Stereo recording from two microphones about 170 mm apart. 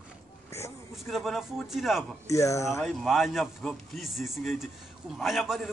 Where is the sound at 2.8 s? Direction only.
Centre (ahead or behind).